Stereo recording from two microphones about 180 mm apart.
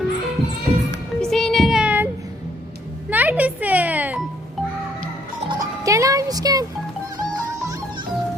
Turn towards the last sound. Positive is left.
turn(degrees=-20)  # may be behind; listen again after turning